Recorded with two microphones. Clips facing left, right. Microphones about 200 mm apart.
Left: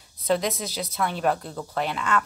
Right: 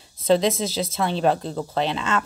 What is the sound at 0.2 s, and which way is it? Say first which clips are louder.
A woman's voice: right 5 dB; 25° right (ahead or behind).